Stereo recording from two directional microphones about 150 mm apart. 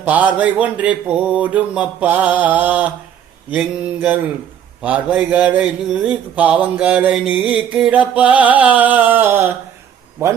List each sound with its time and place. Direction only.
0.0 s speech: 10° right (ahead or behind)